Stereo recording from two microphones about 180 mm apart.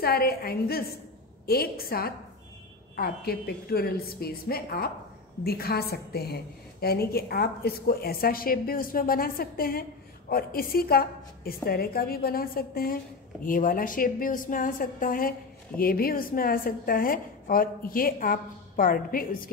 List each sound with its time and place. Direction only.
0.0 s a woman's voice: 55° left (ahead or behind)